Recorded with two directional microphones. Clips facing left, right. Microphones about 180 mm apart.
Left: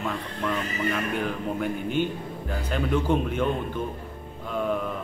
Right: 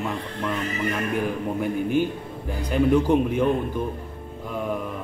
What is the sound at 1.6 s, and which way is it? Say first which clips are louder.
Speech: right 4 dB; 10° right (ahead or behind).